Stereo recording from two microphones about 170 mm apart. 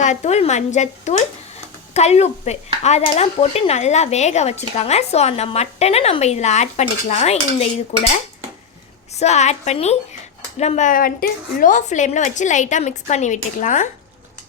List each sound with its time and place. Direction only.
0.0 s a woman's voice: 45° left (ahead or behind)